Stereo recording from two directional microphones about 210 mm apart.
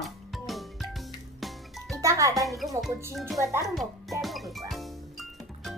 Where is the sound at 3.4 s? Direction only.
15° right (ahead or behind).